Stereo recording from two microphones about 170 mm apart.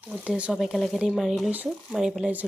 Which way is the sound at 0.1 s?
5° right (ahead or behind).